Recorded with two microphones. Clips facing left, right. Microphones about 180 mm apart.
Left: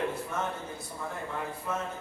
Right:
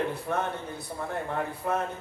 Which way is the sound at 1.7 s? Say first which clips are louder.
Right 6 dB; 60° right (ahead or behind).